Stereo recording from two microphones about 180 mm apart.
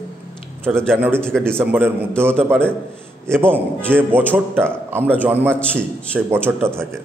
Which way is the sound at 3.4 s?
10° right (ahead or behind).